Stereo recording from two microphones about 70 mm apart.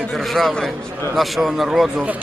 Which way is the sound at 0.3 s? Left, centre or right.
Centre.